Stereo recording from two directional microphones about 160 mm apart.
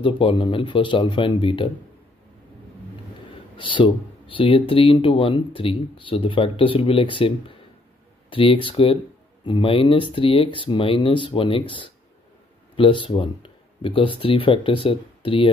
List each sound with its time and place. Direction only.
0.0 s speech: 35° left (ahead or behind)
3.5 s speech: 30° left (ahead or behind)